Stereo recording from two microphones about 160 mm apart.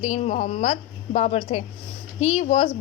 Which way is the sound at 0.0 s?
45° left (ahead or behind).